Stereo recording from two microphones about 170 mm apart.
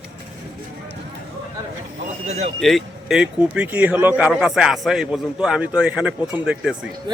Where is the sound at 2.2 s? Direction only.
40° right (ahead or behind).